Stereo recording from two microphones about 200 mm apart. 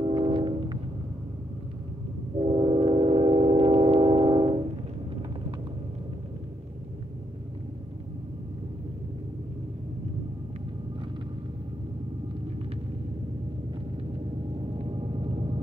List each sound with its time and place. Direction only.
0.0 s train: 25° right (ahead or behind)
2.3 s a sound: 25° right (ahead or behind)
14.8 s vehicle: 25° right (ahead or behind)